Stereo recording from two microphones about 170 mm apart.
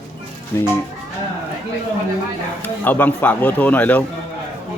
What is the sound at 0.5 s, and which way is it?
Speech, 15° left (ahead or behind).